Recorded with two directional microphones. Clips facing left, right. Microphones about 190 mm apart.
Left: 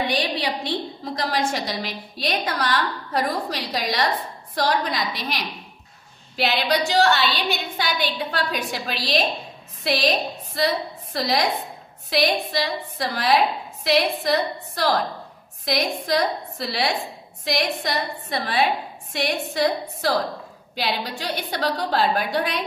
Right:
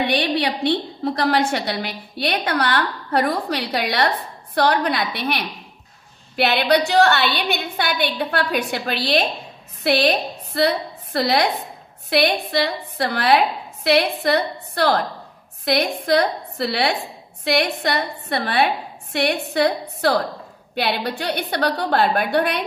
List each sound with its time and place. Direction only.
0.0 s a woman's voice: 65° right (ahead or behind)